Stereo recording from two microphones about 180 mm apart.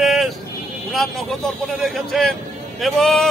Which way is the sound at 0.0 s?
Centre (ahead or behind).